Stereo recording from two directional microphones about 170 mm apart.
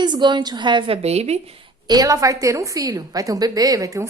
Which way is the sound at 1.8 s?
20° right (ahead or behind).